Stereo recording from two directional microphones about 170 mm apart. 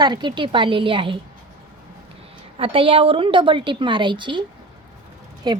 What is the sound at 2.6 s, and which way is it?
A woman's voice, 30° right (ahead or behind).